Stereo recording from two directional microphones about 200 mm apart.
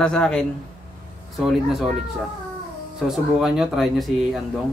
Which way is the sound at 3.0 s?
Centre (ahead or behind).